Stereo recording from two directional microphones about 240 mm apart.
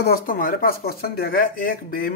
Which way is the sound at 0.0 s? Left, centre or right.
Left.